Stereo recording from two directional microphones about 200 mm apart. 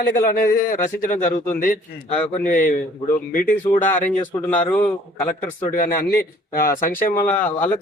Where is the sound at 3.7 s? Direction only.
10° left (ahead or behind).